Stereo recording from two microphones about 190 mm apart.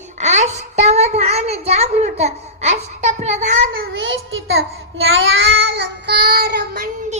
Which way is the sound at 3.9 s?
90° right.